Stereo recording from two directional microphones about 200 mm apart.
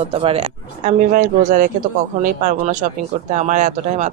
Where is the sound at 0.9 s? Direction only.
40° right (ahead or behind).